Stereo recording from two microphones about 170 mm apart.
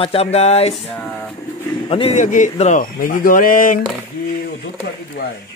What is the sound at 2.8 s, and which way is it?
Speech, 55° left (ahead or behind).